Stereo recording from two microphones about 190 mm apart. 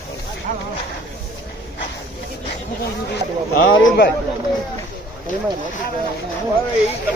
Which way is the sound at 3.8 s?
60° left (ahead or behind).